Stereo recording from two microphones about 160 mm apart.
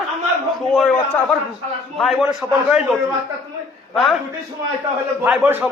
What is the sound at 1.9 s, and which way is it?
A man's voice, centre (ahead or behind).